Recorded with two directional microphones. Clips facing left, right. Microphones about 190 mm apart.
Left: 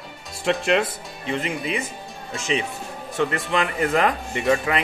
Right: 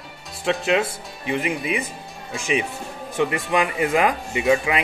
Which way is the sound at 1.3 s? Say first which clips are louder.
Right 2 dB; 15° right (ahead or behind).